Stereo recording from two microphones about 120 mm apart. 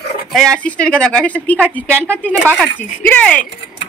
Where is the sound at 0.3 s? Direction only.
5° left (ahead or behind).